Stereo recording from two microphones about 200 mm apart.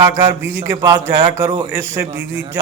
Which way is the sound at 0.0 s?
20° right (ahead or behind).